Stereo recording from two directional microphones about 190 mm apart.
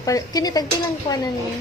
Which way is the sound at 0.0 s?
20° left (ahead or behind).